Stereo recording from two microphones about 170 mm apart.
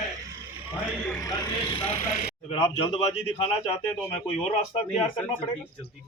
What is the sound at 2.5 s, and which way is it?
Speech, 30° left (ahead or behind).